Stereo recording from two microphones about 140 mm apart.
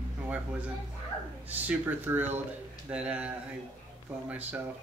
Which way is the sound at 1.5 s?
10° right (ahead or behind).